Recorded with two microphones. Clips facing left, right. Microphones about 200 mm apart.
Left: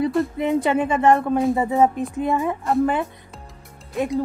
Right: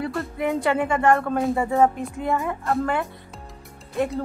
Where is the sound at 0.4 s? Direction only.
20° left (ahead or behind).